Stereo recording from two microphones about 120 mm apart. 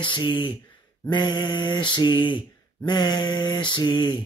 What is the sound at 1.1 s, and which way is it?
Speech, 40° left (ahead or behind).